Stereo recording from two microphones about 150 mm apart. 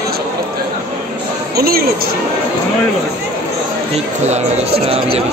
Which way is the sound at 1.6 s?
90° right.